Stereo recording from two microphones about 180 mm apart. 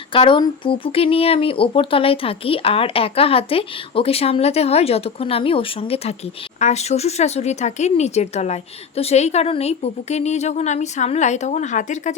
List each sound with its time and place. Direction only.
0.1 s speech: 30° left (ahead or behind)